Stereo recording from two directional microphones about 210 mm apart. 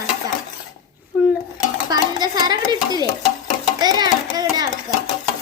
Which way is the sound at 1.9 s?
20° right (ahead or behind).